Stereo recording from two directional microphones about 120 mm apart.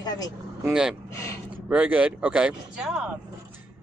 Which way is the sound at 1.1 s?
25° left (ahead or behind).